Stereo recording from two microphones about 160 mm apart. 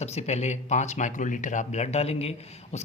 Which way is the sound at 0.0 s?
40° left (ahead or behind).